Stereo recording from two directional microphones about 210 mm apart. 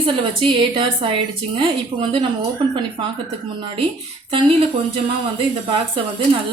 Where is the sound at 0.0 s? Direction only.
25° right (ahead or behind).